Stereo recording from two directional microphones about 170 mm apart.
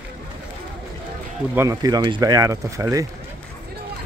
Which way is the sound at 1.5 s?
15° right (ahead or behind).